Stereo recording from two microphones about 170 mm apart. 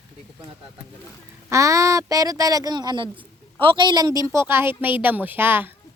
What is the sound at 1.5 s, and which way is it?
A woman's voice, 20° right (ahead or behind).